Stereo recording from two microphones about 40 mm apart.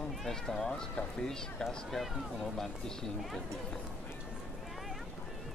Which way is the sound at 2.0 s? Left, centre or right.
Centre.